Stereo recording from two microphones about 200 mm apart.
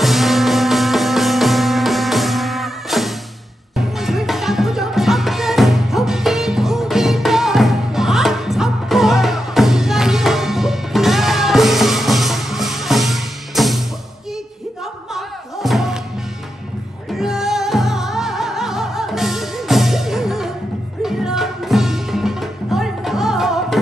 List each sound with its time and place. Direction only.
0.0 s music: centre (ahead or behind)
15.1 s music: centre (ahead or behind)
17.1 s music: centre (ahead or behind)